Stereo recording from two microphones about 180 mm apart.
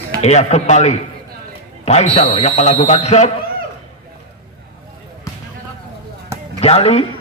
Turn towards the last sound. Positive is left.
turn(degrees=35)  # may be behind; listen again after turning